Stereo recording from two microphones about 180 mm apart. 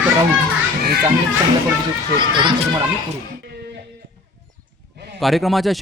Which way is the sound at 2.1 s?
25° right (ahead or behind).